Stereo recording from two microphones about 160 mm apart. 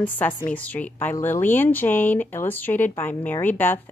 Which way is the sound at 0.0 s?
10° left (ahead or behind).